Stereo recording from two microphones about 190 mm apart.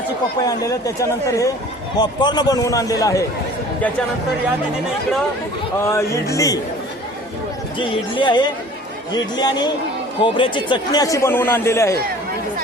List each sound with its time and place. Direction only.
0.4 s a man's voice: 15° left (ahead or behind)
5.8 s a man's voice: 15° left (ahead or behind)
7.8 s a man's voice: 25° left (ahead or behind)